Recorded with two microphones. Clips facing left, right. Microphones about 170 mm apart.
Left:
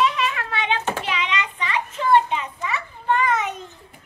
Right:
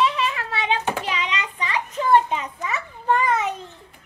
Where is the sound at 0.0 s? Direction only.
30° right (ahead or behind).